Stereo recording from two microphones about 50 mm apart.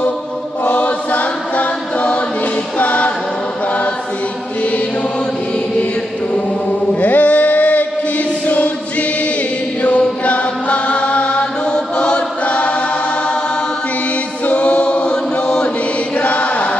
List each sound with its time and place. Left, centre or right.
0.7 s choir: left
7.0 s a sound: left
8.5 s choir: left
9.8 s chant: left
14.4 s choir: left
16.2 s chant: left